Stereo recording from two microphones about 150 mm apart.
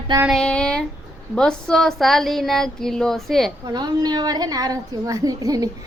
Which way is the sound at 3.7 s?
30° right (ahead or behind).